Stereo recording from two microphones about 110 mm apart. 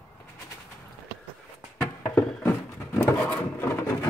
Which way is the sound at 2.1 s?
20° left (ahead or behind).